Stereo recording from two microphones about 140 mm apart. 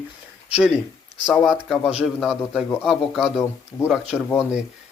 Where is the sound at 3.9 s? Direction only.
5° right (ahead or behind).